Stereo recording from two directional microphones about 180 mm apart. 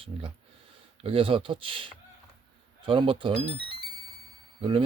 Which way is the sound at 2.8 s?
30° right (ahead or behind).